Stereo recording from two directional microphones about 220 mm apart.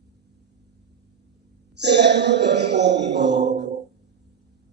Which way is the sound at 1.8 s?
50° right (ahead or behind).